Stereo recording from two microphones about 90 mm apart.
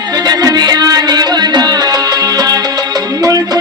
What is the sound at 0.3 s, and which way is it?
Music, 45° right (ahead or behind).